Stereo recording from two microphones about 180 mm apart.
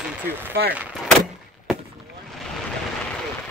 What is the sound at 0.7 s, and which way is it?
Speech, 10° right (ahead or behind).